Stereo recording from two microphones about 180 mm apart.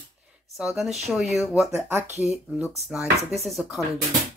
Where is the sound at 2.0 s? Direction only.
40° right (ahead or behind).